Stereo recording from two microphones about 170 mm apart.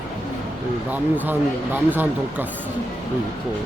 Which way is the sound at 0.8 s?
10° right (ahead or behind).